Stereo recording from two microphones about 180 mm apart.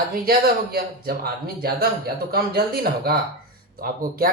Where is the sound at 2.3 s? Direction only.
60° right (ahead or behind).